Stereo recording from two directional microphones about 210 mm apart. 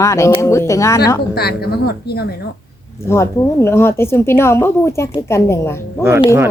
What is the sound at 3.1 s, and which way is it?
A woman's voice, 15° left (ahead or behind).